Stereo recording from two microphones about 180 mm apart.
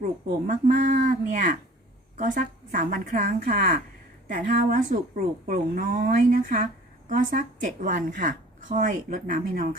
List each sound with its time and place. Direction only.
0.0 s speech: 45° right (ahead or behind)